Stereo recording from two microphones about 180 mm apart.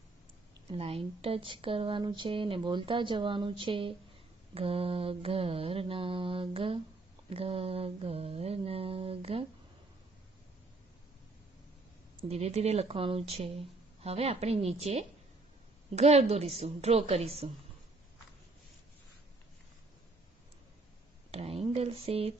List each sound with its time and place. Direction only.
0.7 s a woman's voice: 30° right (ahead or behind)
12.2 s a woman's voice: 35° right (ahead or behind)
21.3 s a sound: 35° right (ahead or behind)